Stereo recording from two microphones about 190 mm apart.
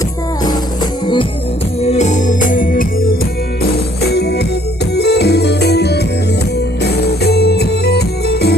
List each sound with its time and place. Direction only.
1.8 s music: 35° left (ahead or behind)
4.1 s music: 60° left (ahead or behind)